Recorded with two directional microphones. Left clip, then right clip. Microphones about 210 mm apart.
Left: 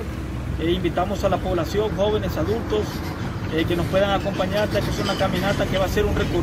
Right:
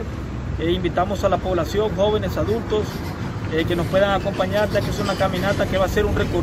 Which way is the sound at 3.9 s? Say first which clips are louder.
Right 2 dB; centre (ahead or behind).